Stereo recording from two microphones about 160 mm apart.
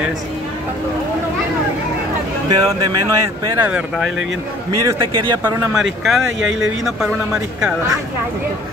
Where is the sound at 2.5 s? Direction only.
25° right (ahead or behind).